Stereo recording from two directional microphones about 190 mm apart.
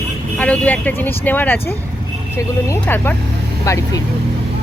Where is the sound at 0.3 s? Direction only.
5° left (ahead or behind).